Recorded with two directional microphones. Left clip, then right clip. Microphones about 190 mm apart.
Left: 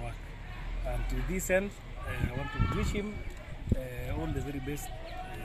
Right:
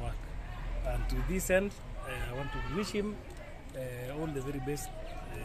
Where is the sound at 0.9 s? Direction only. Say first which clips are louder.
Even; 15° right (ahead or behind).